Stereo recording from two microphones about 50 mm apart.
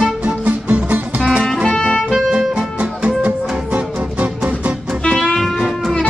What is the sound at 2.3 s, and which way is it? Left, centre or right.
Music, centre.